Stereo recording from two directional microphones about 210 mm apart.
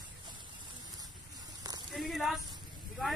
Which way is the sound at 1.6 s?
20° right (ahead or behind).